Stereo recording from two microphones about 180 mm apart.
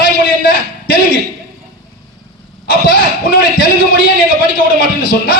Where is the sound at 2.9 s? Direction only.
55° left (ahead or behind).